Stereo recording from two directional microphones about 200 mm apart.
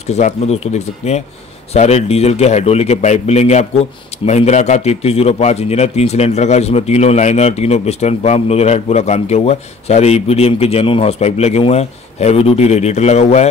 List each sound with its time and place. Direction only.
0.0 s a man's voice: 35° left (ahead or behind)